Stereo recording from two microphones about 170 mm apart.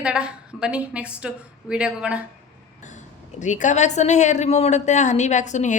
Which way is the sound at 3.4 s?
45° left (ahead or behind).